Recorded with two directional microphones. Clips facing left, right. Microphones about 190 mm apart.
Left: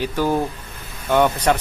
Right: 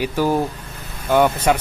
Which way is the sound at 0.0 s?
10° right (ahead or behind).